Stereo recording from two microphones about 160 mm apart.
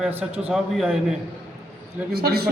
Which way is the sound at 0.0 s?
10° right (ahead or behind).